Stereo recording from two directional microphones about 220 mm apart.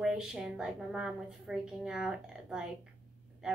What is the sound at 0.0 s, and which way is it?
A woman's voice, 5° right (ahead or behind).